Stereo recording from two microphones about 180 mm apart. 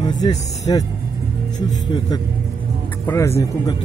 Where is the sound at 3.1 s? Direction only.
15° left (ahead or behind).